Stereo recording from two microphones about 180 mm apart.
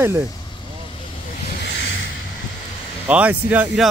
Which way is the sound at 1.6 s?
70° left (ahead or behind).